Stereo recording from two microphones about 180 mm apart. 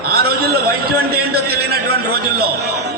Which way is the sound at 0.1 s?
60° right (ahead or behind).